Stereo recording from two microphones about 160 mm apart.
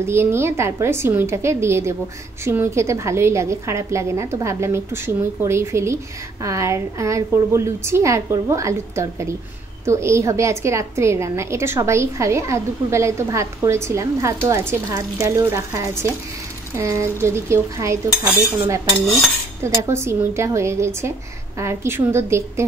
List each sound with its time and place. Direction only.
0.0 s a woman's voice: 15° right (ahead or behind)
19.6 s a woman's voice: 15° right (ahead or behind)